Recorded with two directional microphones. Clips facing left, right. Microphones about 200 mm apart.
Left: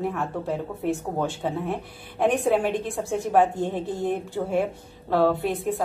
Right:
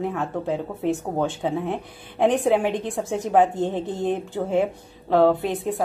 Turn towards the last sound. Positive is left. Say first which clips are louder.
# right 3 dB
turn(degrees=-20)  # may be behind; listen again after turning